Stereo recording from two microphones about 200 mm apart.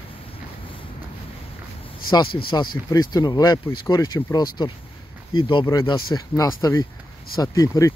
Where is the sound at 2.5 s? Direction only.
20° left (ahead or behind).